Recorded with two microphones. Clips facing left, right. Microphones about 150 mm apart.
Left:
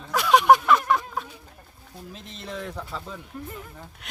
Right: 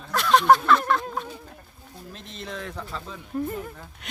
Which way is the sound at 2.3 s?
Centre (ahead or behind).